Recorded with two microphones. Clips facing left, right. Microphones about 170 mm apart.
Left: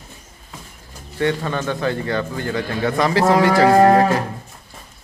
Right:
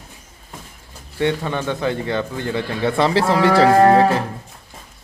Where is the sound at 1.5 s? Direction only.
15° right (ahead or behind).